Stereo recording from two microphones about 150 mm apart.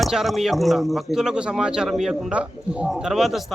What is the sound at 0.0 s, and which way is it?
A man's voice, centre (ahead or behind).